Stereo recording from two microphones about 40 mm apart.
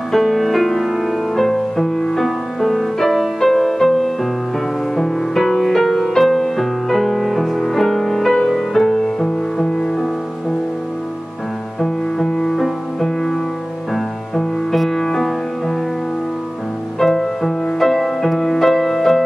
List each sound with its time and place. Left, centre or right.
0.1 s music: centre
11.8 s music: centre
14.3 s music: centre
17.0 s music: centre